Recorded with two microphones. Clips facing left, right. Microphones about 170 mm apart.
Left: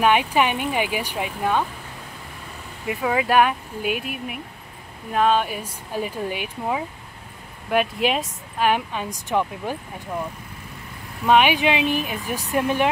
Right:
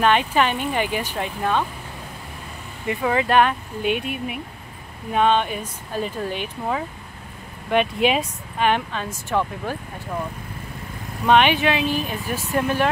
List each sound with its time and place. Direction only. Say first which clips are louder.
0.0 s speech: even; 10° left (ahead or behind)
2.9 s speech: right 1 dB; 5° left (ahead or behind)
11.2 s speech: even; 5° left (ahead or behind)